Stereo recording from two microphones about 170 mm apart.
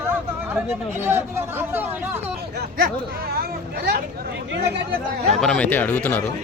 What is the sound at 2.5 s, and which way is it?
Speech, 65° right (ahead or behind).